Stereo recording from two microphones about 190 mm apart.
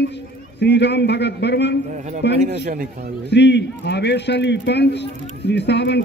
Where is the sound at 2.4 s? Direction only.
50° right (ahead or behind).